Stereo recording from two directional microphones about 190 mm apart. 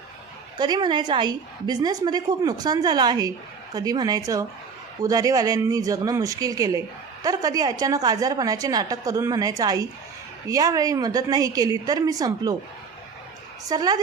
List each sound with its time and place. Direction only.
0.6 s speech: 25° right (ahead or behind)
13.7 s speech: 20° right (ahead or behind)